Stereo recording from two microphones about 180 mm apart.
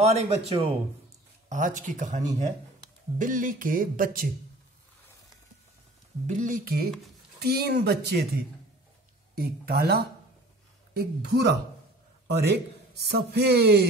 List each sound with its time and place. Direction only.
0.0 s speech: 35° right (ahead or behind)
1.5 s speech: 45° right (ahead or behind)
6.2 s a man's voice: 45° right (ahead or behind); by 8.3 s 65° right (ahead or behind)
9.3 s a man's voice: 55° right (ahead or behind)